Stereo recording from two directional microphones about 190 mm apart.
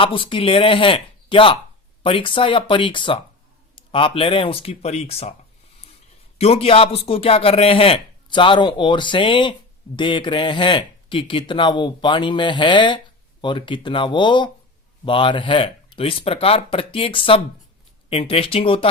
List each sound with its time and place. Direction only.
0.0 s a man's voice: 25° left (ahead or behind)
6.4 s a man's voice: 30° left (ahead or behind)